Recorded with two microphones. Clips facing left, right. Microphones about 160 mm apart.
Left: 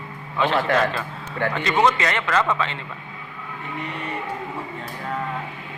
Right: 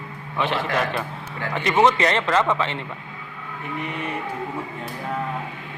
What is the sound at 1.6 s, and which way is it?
A man's voice, 20° right (ahead or behind).